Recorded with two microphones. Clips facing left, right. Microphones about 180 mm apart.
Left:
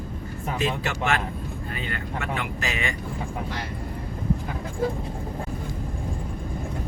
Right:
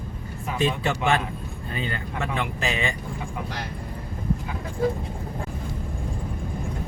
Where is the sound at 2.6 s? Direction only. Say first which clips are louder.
Right 2 dB; 30° right (ahead or behind).